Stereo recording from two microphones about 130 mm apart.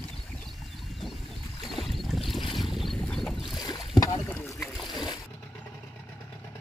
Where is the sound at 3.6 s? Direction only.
30° left (ahead or behind).